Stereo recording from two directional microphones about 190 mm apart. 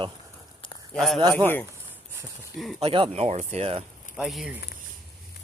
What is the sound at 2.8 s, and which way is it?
Speech, 25° right (ahead or behind).